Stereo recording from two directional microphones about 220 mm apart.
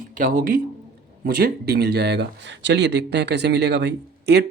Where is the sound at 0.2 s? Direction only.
35° right (ahead or behind).